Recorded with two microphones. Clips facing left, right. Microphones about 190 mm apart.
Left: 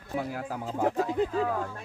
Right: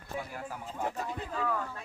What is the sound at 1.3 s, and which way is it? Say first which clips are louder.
Speech: left 5 dB; 35° left (ahead or behind).